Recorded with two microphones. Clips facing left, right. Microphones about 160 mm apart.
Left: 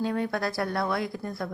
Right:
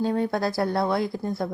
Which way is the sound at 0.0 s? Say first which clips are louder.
Right 4 dB; 30° right (ahead or behind).